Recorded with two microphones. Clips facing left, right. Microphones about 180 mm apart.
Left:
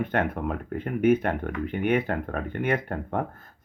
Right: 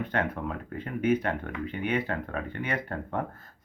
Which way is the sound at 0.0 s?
55° left (ahead or behind).